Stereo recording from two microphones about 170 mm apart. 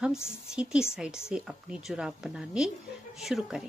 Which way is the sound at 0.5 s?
5° right (ahead or behind).